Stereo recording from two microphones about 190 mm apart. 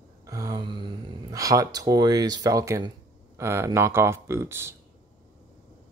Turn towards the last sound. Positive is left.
turn(degrees=-15)  # may be behind; listen again after turning